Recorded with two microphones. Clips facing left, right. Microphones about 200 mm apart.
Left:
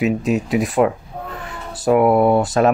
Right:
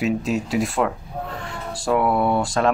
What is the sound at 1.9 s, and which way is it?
Speech, 20° left (ahead or behind).